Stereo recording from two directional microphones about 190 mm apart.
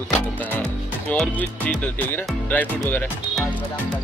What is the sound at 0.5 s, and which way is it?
Speech, 5° left (ahead or behind).